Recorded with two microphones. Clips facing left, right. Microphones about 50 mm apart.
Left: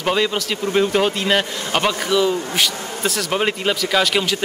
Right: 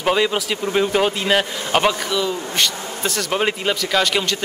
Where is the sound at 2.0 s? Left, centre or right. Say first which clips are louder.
Left 4 dB; centre.